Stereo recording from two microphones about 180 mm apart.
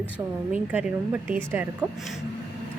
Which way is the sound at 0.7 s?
5° right (ahead or behind).